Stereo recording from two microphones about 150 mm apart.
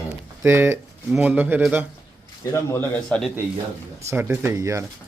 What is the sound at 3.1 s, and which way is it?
Speech, 5° left (ahead or behind).